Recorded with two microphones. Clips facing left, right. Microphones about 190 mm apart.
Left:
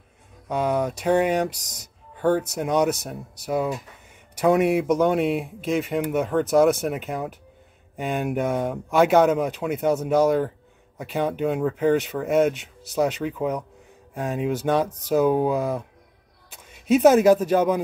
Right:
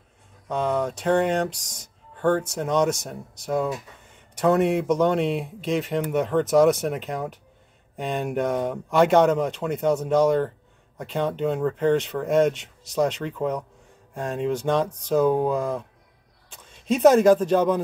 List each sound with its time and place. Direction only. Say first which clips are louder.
0.5 s speech: left 1 dB; 10° left (ahead or behind)
1.5 s speech: even; 70° left (ahead or behind)
2.1 s music: left 1 dB; 10° left (ahead or behind)
2.5 s speech: left 1 dB; 10° left (ahead or behind)